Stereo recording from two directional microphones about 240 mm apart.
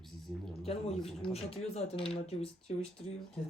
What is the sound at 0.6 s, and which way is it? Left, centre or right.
Speech, left.